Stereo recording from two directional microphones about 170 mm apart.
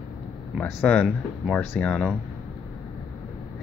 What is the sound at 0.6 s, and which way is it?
Speech, 5° left (ahead or behind).